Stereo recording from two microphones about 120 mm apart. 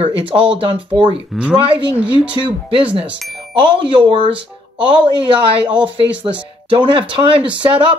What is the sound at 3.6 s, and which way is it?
Speech, 40° right (ahead or behind).